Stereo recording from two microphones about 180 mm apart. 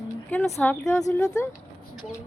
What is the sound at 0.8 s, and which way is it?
Speech, 15° left (ahead or behind).